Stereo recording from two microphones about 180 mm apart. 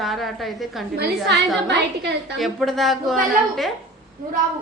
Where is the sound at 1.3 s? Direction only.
70° right (ahead or behind).